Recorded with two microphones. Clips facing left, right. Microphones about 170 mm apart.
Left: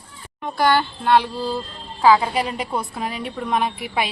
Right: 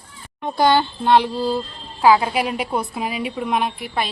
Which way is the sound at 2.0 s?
10° right (ahead or behind).